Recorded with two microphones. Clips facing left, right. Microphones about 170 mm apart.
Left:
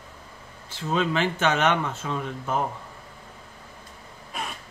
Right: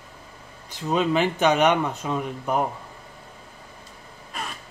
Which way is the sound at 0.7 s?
15° right (ahead or behind).